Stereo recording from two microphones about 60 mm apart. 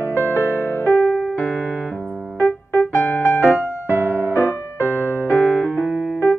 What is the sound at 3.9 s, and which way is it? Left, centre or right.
Music, right.